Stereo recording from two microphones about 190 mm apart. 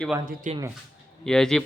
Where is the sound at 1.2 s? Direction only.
5° left (ahead or behind).